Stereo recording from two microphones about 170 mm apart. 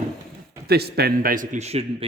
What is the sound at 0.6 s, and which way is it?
Speech, 70° right (ahead or behind).